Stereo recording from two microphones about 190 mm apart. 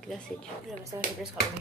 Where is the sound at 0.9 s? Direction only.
15° right (ahead or behind).